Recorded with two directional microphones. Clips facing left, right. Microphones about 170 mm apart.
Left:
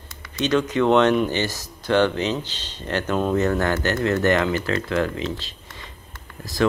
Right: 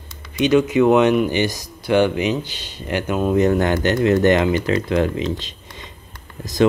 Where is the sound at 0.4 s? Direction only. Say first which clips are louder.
Right 5 dB; 10° right (ahead or behind).